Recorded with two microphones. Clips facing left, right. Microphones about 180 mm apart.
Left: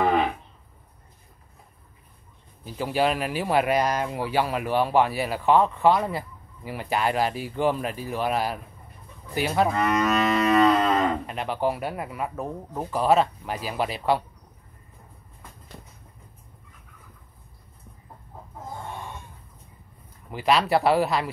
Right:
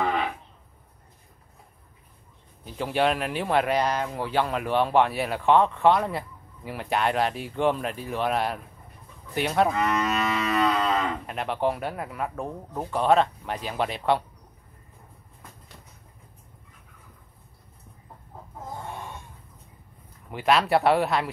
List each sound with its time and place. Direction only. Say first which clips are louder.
2.6 s speech: even; 5° left (ahead or behind)
9.8 s livestock: left 3 dB; 45° left (ahead or behind)
11.2 s speech: even; centre (ahead or behind)
20.2 s speech: even; centre (ahead or behind)